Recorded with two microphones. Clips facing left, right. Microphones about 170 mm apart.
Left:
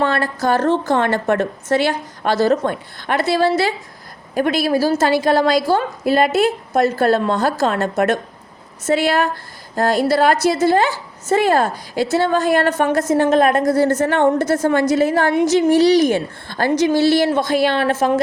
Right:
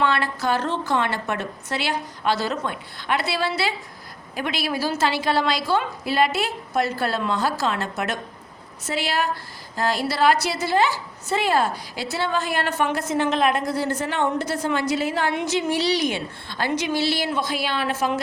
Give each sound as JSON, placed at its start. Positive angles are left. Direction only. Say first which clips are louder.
{"t": 0.0, "sound": "a woman's voice", "louder": "left 4 dB", "side_deg": 40}